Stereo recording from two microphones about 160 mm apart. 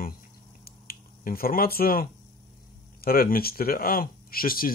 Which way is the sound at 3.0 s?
65° left (ahead or behind).